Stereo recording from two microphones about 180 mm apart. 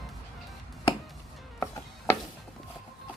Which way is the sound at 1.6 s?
15° left (ahead or behind).